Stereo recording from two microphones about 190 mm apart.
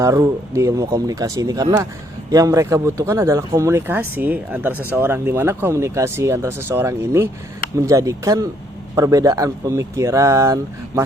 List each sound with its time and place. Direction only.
0.0 s speech: 15° right (ahead or behind)